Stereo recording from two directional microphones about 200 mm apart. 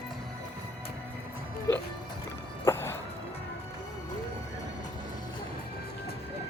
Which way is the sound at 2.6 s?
15° left (ahead or behind).